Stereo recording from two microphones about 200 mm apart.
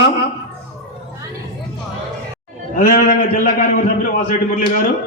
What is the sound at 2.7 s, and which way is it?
A man's voice, 45° left (ahead or behind).